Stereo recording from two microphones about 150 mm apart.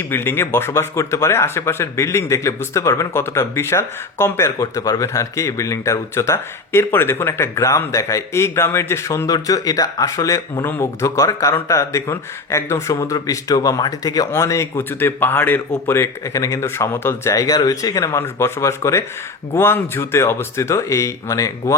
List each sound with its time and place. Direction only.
0.1 s speech: 15° left (ahead or behind)